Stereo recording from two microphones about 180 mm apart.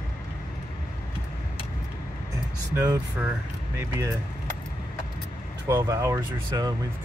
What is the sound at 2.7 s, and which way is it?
Speech, 15° right (ahead or behind).